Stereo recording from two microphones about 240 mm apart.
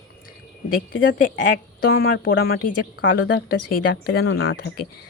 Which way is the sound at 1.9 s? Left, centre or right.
Left.